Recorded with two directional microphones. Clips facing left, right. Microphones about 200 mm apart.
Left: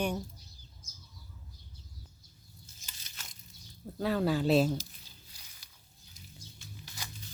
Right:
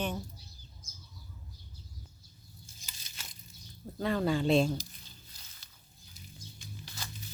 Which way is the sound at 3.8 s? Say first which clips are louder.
Left 1 dB; 5° left (ahead or behind).